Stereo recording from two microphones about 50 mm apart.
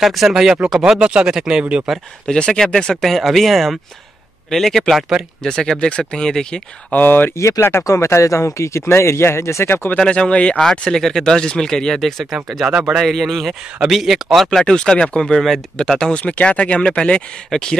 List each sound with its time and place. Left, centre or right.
0.0 s speech: centre
2.2 s speech: centre
3.1 s speech: centre
6.9 s speech: left
7.9 s speech: left
9.9 s speech: centre
10.6 s speech: centre
12.6 s speech: centre
13.0 s speech: centre
14.7 s speech: centre
16.1 s speech: left